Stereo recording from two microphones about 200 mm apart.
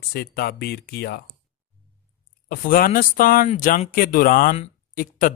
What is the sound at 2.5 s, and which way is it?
Speech, 45° left (ahead or behind).